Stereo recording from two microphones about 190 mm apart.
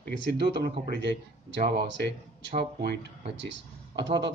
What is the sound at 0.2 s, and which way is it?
Speech, 65° right (ahead or behind).